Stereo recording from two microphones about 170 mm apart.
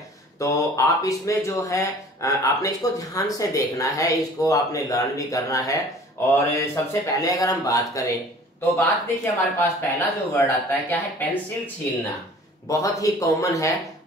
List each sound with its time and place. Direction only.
0.4 s speech: 20° left (ahead or behind)